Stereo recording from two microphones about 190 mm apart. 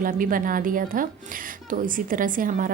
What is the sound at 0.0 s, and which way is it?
A woman's voice, 45° right (ahead or behind).